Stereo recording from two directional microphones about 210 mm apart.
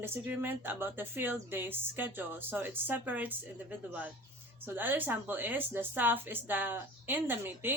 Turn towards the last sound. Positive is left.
turn(degrees=-10)  # may be behind; listen again after turning